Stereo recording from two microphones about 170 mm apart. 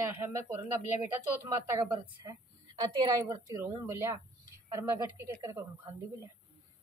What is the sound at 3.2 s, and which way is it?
Speech, 20° right (ahead or behind).